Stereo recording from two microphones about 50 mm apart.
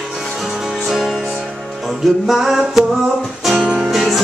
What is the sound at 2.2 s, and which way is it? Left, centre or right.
Music, centre.